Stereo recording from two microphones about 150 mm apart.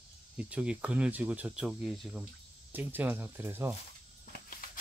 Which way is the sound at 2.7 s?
10° right (ahead or behind).